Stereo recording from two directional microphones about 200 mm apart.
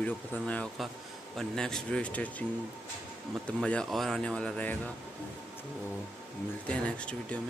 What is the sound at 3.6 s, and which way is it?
Speech, 5° left (ahead or behind).